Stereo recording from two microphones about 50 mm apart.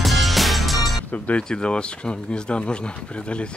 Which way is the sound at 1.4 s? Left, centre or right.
Centre.